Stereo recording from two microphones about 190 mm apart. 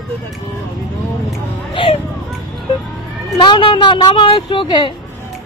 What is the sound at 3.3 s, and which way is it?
Speech, 25° left (ahead or behind).